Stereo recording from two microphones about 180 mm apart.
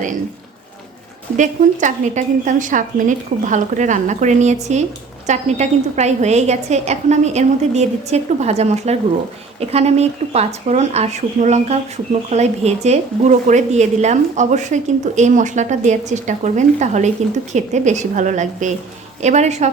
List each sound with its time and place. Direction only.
1.4 s a woman's voice: 45° right (ahead or behind)